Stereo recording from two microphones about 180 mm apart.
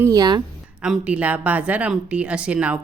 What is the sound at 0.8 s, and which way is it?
A woman's voice, 5° right (ahead or behind).